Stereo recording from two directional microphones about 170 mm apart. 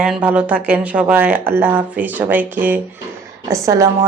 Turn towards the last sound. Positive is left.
turn(degrees=-20)  # may be behind; listen again after turning